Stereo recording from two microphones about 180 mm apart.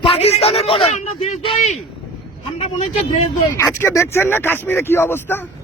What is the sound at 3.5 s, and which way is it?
Speech, 15° left (ahead or behind).